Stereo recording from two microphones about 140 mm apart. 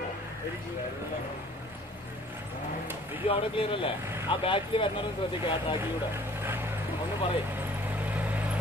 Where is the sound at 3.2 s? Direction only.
40° left (ahead or behind).